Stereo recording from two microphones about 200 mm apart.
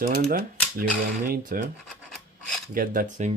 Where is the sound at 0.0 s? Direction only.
45° right (ahead or behind).